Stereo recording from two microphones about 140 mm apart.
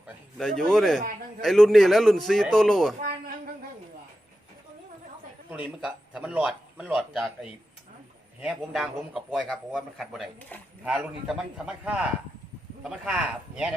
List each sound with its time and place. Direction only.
0.3 s a man's voice: 5° left (ahead or behind)
3.0 s a sound: 90° right
5.5 s a man's voice: 5° right (ahead or behind)
10.5 s speech: 10° left (ahead or behind)
10.8 s a man's voice: 5° right (ahead or behind)